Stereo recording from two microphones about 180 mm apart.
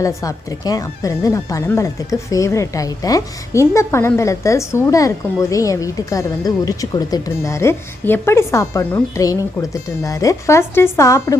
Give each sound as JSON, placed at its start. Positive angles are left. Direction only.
{"t": 0.0, "sound": "a woman's voice", "side_deg": 15}